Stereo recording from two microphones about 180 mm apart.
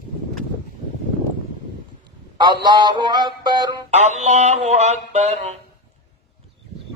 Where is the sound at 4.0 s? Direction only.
40° right (ahead or behind).